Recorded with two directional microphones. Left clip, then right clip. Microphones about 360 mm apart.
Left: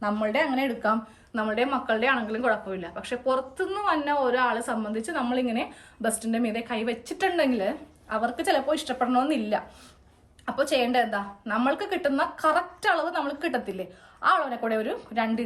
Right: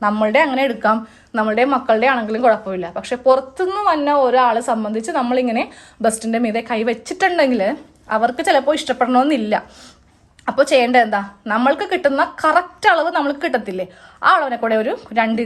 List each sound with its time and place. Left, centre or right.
0.0 s a woman's voice: right